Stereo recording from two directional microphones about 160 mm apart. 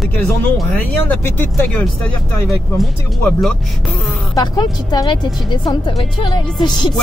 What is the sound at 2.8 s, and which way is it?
Speech, centre (ahead or behind).